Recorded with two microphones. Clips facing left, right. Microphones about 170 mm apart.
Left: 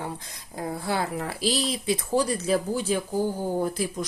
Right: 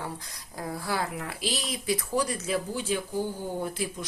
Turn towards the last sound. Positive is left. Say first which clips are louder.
# left 5 dB
turn(degrees=40)  # may be behind; listen again after turning